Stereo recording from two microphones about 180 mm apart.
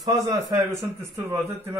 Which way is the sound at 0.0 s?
20° right (ahead or behind).